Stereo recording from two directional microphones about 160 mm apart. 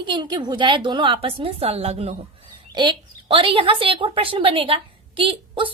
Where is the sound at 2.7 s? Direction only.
30° right (ahead or behind).